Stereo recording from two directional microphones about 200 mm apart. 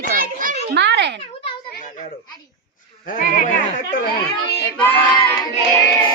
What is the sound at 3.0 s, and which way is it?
Speech, 40° left (ahead or behind).